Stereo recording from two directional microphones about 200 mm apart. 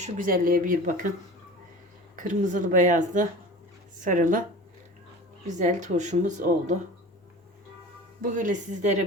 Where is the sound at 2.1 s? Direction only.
40° right (ahead or behind).